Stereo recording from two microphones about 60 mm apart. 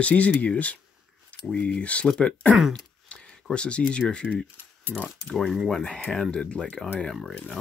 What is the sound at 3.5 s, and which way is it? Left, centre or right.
Speech, centre.